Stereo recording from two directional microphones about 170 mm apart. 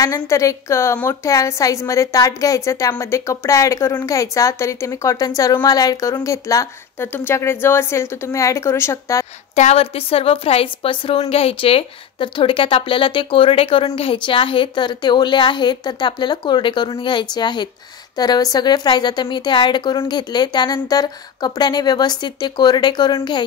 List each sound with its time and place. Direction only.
0.0 s a woman's voice: 20° left (ahead or behind)
9.6 s a woman's voice: 40° left (ahead or behind)